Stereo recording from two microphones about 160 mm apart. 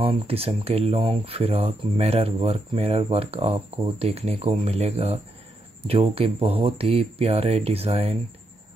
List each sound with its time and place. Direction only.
0.0 s speech: 35° right (ahead or behind)